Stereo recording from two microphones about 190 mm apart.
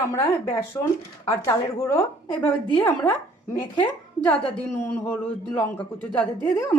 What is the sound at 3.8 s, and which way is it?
A woman's voice, 10° left (ahead or behind).